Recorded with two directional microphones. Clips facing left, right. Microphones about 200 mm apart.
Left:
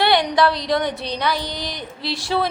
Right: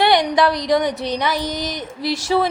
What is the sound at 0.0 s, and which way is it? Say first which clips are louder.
A woman's voice: right 2 dB; 20° right (ahead or behind).